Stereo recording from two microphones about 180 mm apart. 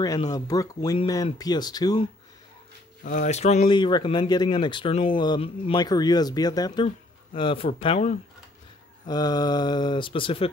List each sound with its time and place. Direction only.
0.3 s speech: 20° left (ahead or behind)
3.0 s speech: 45° left (ahead or behind)
3.6 s speech: 25° left (ahead or behind)
9.0 s speech: 20° left (ahead or behind)